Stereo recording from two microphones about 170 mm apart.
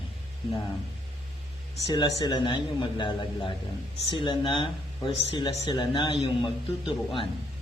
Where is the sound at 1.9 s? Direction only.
25° left (ahead or behind).